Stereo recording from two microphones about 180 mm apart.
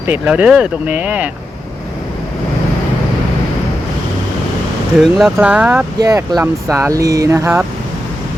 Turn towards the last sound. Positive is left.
turn(degrees=-15)  # may be behind; listen again after turning